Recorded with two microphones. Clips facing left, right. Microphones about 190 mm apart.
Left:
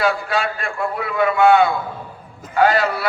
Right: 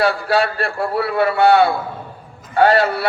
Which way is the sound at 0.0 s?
35° right (ahead or behind).